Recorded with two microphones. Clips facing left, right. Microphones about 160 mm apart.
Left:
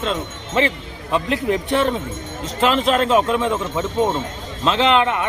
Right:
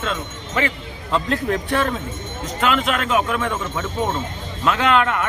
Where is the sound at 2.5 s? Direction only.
30° left (ahead or behind).